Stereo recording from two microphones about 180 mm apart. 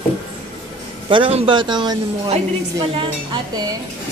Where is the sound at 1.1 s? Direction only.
30° right (ahead or behind).